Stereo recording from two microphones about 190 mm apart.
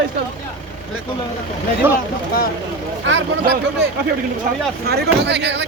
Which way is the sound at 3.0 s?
70° right (ahead or behind).